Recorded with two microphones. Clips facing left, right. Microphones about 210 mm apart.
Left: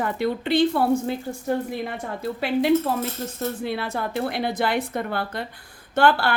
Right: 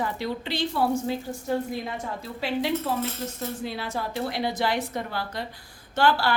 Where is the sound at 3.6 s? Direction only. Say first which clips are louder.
Left 4 dB; 60° left (ahead or behind).